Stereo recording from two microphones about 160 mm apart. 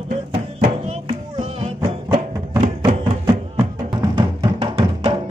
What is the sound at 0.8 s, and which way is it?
Music, 40° right (ahead or behind).